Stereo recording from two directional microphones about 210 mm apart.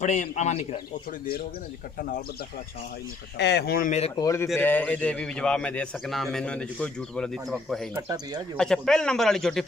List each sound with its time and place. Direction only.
0.0 s a man's voice: 35° left (ahead or behind)
3.3 s speech: 55° left (ahead or behind); by 4.1 s 35° left (ahead or behind)
4.1 s a man's voice: 15° left (ahead or behind)
7.9 s speech: 15° right (ahead or behind)
8.5 s a man's voice: 5° left (ahead or behind)